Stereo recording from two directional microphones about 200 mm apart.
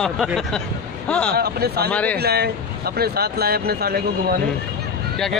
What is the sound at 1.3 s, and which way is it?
Speech, 50° right (ahead or behind).